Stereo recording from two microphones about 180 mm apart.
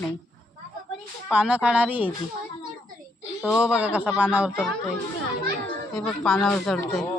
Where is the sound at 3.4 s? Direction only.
5° right (ahead or behind).